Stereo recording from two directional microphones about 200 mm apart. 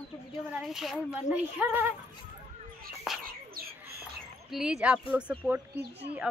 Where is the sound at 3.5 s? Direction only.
50° right (ahead or behind).